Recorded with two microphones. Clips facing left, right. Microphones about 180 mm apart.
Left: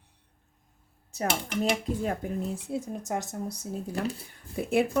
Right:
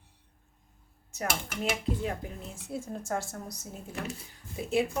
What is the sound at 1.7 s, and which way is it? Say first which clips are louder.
Speech: left 3 dB; 45° left (ahead or behind).